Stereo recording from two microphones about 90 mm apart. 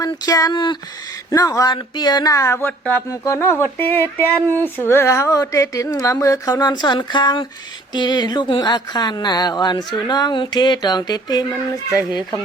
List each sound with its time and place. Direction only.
0.0 s speech: 45° left (ahead or behind)
1.7 s speech: 50° left (ahead or behind)
2.6 s speech: 20° left (ahead or behind)
3.1 s speech: 35° left (ahead or behind); by 11.4 s 50° left (ahead or behind)